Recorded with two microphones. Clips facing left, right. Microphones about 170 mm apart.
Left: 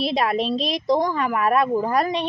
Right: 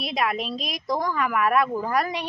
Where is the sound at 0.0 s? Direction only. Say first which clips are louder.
Left 5 dB; 30° left (ahead or behind).